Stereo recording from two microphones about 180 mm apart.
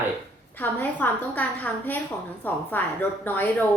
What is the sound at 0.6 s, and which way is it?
A woman's voice, 10° left (ahead or behind).